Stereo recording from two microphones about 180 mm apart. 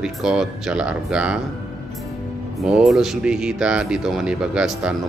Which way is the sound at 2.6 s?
Centre (ahead or behind).